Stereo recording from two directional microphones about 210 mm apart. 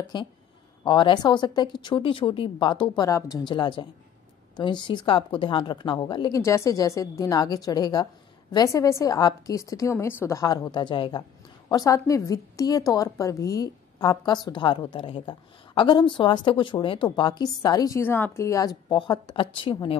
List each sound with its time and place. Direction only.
0.0 s a woman's voice: 20° left (ahead or behind)